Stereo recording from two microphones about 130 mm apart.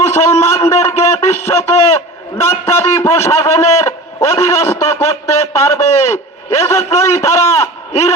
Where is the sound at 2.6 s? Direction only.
20° left (ahead or behind).